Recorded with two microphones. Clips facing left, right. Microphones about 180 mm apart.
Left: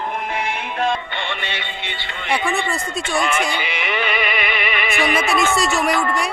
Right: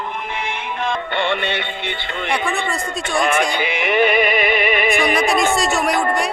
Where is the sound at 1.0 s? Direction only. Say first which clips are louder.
Right 7 dB; 55° right (ahead or behind).